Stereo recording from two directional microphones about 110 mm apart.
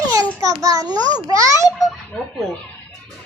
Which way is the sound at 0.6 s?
35° right (ahead or behind).